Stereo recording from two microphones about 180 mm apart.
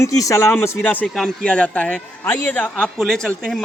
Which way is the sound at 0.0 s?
15° left (ahead or behind).